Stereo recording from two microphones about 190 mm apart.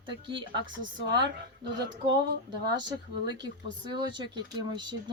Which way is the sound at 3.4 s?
25° right (ahead or behind).